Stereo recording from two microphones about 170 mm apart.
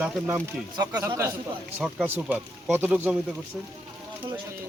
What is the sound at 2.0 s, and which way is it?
Speech, 10° right (ahead or behind).